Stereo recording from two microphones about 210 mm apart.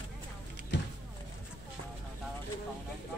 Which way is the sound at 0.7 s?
55° left (ahead or behind).